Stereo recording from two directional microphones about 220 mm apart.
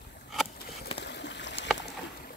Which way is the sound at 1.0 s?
55° left (ahead or behind).